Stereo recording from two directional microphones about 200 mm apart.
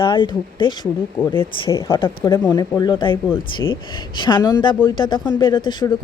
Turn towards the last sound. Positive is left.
turn(degrees=20)  # may be behind; listen again after turning